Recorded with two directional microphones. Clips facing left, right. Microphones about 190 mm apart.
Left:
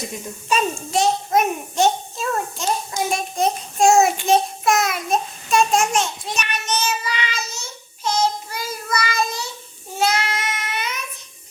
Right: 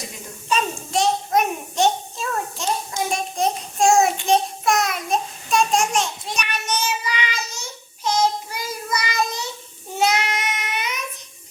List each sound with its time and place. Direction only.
0.5 s a sound: 5° left (ahead or behind)
3.1 s child singing: centre (ahead or behind)
6.4 s child singing: 10° right (ahead or behind)